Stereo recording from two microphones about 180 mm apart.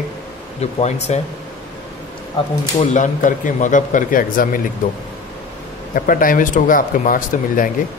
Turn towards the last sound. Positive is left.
turn(degrees=50)  # may be behind; listen again after turning